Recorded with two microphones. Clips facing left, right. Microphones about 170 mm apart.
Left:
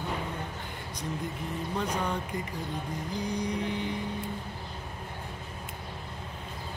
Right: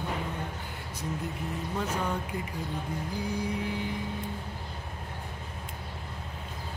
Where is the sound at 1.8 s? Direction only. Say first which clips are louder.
Even; 5° right (ahead or behind).